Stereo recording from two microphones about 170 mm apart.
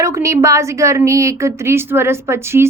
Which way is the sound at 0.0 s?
15° right (ahead or behind).